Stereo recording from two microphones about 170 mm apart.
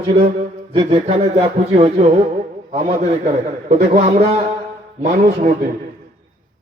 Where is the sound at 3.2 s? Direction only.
45° right (ahead or behind).